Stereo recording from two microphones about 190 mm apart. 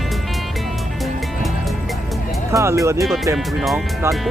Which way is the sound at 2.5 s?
15° right (ahead or behind).